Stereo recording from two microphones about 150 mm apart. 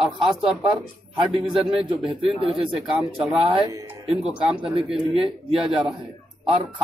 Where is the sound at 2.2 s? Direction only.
35° right (ahead or behind).